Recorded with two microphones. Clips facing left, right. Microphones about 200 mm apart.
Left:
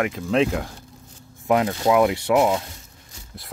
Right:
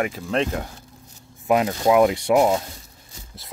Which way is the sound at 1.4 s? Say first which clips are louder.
Right 1 dB; 15° right (ahead or behind).